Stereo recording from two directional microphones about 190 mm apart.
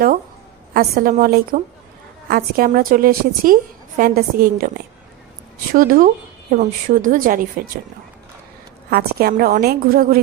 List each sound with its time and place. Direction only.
0.7 s a woman's voice: 50° right (ahead or behind)
5.7 s a woman's voice: 45° right (ahead or behind)
8.9 s a woman's voice: 55° right (ahead or behind)